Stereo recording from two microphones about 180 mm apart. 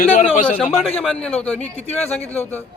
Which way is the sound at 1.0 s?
Centre (ahead or behind).